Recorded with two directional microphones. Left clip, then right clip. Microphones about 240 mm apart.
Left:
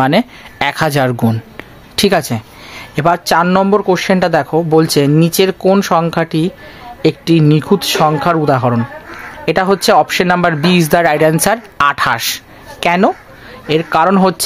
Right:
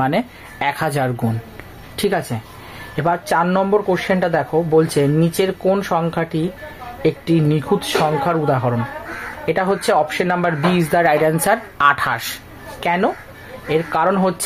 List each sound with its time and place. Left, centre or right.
0.0 s speech: left
12.8 s speech: left